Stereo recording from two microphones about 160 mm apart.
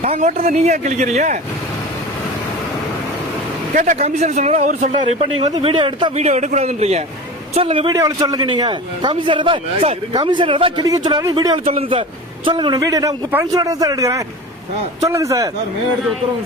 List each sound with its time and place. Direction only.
0.0 s speech: 45° right (ahead or behind)
3.8 s speech: 45° right (ahead or behind)
5.6 s speech: 35° right (ahead or behind)
6.1 s speech: 45° right (ahead or behind)
7.9 s a man's voice: 25° right (ahead or behind)
11.6 s a man's voice: 40° right (ahead or behind); by 15.4 s 20° right (ahead or behind)